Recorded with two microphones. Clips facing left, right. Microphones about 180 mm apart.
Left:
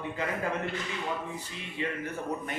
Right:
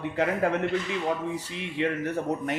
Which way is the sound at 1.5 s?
75° right (ahead or behind).